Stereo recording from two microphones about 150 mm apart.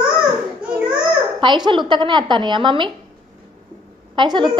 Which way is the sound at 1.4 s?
30° right (ahead or behind).